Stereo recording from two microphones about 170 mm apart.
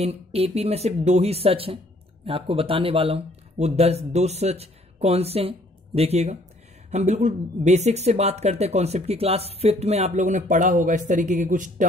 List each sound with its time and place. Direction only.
0.0 s speech: 35° right (ahead or behind)